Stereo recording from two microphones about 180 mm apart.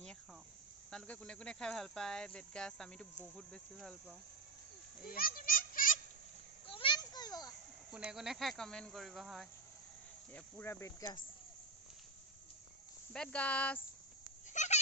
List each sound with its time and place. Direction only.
0.9 s speech: 5° left (ahead or behind)
5.0 s children playing: 55° left (ahead or behind)
6.7 s a sound: 30° left (ahead or behind)
7.9 s speech: 5° right (ahead or behind)
10.3 s speech: 15° left (ahead or behind)
13.1 s speech: 5° left (ahead or behind)
14.5 s a sound: 40° left (ahead or behind)